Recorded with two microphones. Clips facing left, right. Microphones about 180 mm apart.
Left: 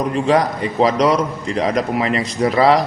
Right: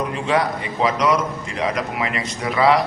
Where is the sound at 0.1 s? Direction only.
40° left (ahead or behind).